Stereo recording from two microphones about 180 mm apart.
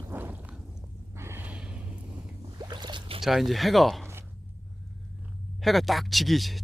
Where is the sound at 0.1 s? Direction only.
10° right (ahead or behind).